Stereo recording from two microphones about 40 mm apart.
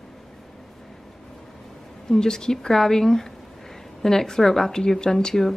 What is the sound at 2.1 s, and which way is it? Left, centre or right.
Speech, centre.